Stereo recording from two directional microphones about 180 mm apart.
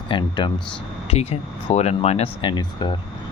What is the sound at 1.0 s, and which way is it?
Speech, 35° left (ahead or behind).